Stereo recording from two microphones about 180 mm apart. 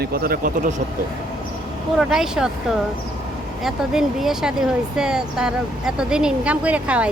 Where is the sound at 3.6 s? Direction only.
Centre (ahead or behind).